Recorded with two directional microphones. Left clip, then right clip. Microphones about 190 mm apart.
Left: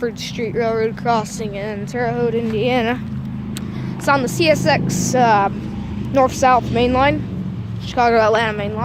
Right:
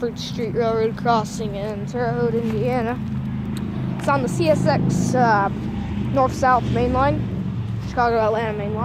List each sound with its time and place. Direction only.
0.0 s speech: 30° left (ahead or behind)
2.0 s speech: 30° left (ahead or behind)
4.0 s speech: 40° left (ahead or behind)